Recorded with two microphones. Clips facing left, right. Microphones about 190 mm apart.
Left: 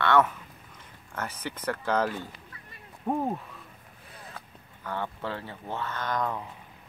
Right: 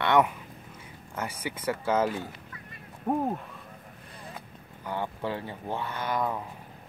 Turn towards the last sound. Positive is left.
turn(degrees=-10)  # may be behind; listen again after turning